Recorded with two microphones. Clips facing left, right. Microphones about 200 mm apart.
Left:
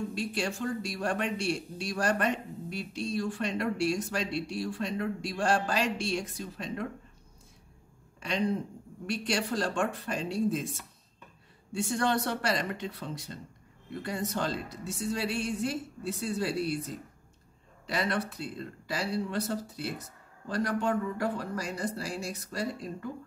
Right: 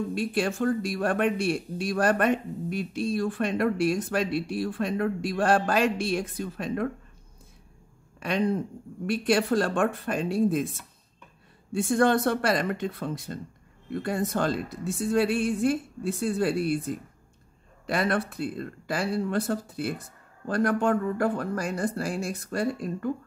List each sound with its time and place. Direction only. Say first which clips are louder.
0.1 s speech: right 6 dB; 55° right (ahead or behind)
8.2 s speech: right 4 dB; 55° right (ahead or behind)